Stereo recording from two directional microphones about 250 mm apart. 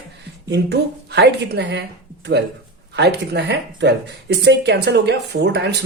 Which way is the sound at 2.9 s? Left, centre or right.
Right.